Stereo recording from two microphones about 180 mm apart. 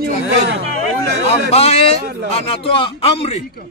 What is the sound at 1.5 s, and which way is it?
Speech, 35° left (ahead or behind).